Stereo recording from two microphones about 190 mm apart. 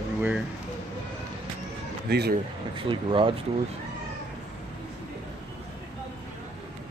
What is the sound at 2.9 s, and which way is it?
Speech, 25° right (ahead or behind).